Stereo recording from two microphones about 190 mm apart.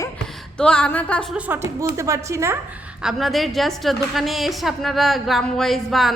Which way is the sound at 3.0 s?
Centre (ahead or behind).